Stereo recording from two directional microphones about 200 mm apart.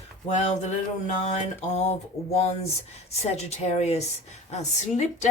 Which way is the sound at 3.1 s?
30° left (ahead or behind).